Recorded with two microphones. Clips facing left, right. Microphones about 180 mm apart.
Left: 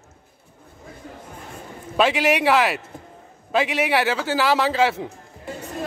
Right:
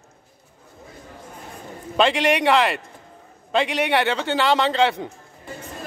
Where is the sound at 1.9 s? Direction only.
5° left (ahead or behind).